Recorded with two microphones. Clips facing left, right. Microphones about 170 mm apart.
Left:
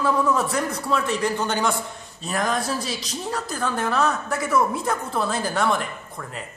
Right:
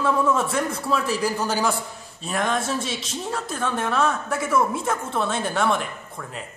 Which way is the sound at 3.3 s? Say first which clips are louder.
Even; centre (ahead or behind).